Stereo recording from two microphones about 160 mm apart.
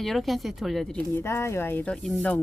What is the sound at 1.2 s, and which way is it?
Speech, 15° left (ahead or behind).